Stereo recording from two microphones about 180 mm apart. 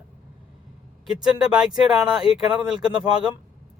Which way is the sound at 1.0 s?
5° right (ahead or behind).